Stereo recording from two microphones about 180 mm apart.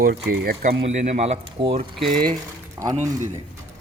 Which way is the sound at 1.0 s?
40° right (ahead or behind).